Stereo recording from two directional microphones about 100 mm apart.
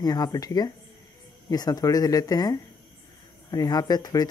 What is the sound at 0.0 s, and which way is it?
Speech, 40° left (ahead or behind).